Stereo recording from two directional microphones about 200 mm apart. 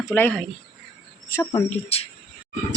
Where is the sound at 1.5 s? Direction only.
30° left (ahead or behind).